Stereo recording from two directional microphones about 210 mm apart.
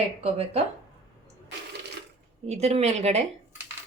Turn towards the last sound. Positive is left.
turn(degrees=-30)  # may be behind; listen again after turning